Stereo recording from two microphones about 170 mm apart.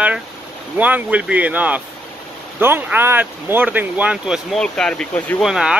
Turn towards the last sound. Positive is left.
turn(degrees=-5)  # may be behind; listen again after turning